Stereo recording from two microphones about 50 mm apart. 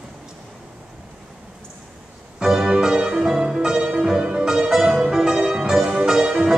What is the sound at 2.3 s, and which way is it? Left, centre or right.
Music, centre.